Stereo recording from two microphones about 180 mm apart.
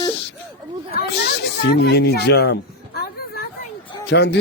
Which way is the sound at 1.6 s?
65° left (ahead or behind).